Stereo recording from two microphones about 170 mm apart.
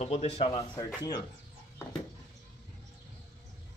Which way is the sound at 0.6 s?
20° left (ahead or behind).